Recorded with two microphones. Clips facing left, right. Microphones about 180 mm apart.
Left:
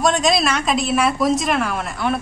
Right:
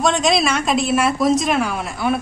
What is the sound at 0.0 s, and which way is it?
Speech, centre (ahead or behind).